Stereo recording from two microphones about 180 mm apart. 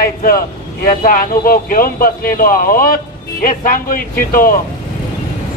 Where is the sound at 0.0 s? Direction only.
55° left (ahead or behind).